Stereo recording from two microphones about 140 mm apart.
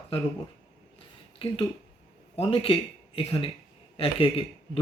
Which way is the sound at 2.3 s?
45° left (ahead or behind).